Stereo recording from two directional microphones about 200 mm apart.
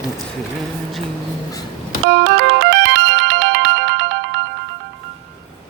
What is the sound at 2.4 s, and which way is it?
Ringtone, 55° right (ahead or behind).